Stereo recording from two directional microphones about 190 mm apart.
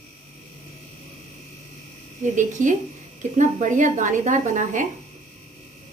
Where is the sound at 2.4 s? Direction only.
40° right (ahead or behind).